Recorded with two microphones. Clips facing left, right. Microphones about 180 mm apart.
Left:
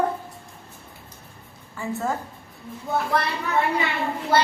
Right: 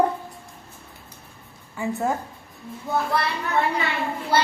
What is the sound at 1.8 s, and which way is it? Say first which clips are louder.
Speech: right 2 dB; 15° right (ahead or behind).